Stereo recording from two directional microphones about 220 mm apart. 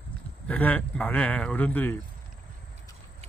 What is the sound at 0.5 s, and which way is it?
Speech, 5° left (ahead or behind).